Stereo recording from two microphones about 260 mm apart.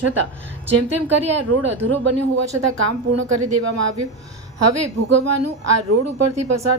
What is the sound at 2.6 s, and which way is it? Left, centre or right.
A woman's voice, right.